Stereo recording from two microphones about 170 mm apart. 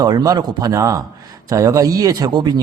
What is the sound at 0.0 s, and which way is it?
Speech, 25° right (ahead or behind).